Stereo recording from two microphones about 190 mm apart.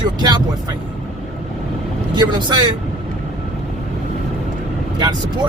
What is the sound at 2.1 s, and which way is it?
Speech, 25° right (ahead or behind).